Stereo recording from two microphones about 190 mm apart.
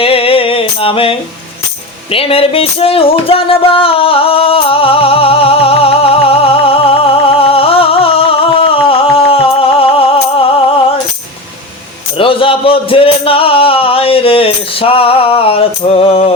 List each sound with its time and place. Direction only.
0.0 s a sound: 30° left (ahead or behind)
2.0 s music: 30° left (ahead or behind)
12.1 s music: 30° left (ahead or behind)